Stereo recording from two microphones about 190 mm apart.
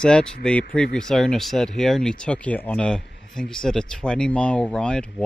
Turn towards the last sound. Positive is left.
turn(degrees=5)  # may be behind; listen again after turning